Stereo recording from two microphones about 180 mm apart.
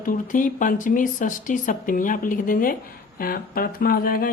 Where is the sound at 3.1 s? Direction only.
55° left (ahead or behind).